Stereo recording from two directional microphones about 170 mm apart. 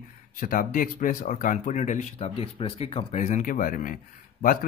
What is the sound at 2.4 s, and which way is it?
Speech, 35° left (ahead or behind).